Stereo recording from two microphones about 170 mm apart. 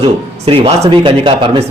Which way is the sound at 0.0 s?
35° right (ahead or behind).